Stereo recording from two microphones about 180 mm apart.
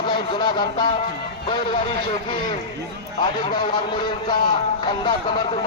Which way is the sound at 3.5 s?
25° left (ahead or behind).